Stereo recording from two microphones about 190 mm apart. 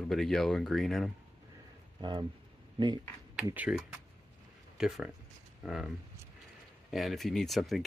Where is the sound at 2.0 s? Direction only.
20° right (ahead or behind).